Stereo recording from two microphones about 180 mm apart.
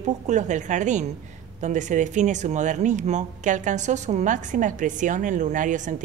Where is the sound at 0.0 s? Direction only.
40° right (ahead or behind).